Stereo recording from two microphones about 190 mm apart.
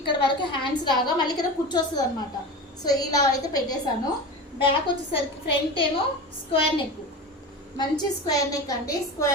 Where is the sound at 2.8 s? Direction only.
20° left (ahead or behind).